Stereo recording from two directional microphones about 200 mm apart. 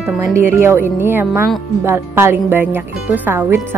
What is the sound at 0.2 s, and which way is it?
Speech, 15° right (ahead or behind).